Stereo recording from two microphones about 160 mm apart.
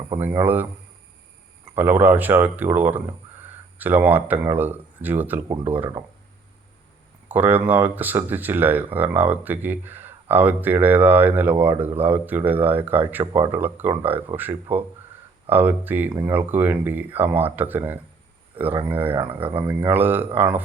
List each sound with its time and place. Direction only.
0.2 s speech: 15° right (ahead or behind)
1.7 s speech: 10° right (ahead or behind)
7.3 s speech: 10° right (ahead or behind)
19.4 s speech: 35° right (ahead or behind)
19.6 s speech: 10° right (ahead or behind)